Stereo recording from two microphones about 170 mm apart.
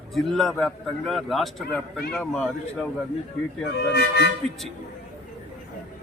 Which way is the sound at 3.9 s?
75° left (ahead or behind).